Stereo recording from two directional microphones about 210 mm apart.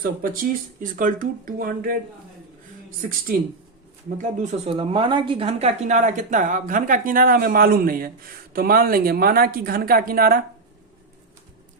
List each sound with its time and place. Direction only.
0.0 s speech: 40° right (ahead or behind)
4.2 s speech: 35° right (ahead or behind)